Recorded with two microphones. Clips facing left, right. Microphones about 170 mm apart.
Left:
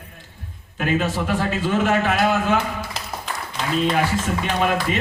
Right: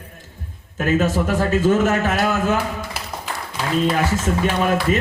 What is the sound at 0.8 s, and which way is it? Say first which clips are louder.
A man's voice: right 3 dB; 45° right (ahead or behind).